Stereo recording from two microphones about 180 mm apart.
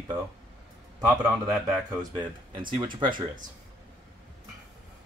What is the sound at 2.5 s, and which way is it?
Speech, 25° right (ahead or behind).